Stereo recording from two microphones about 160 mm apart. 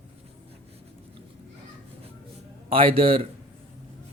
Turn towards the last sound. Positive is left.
turn(degrees=-35)  # may be behind; listen again after turning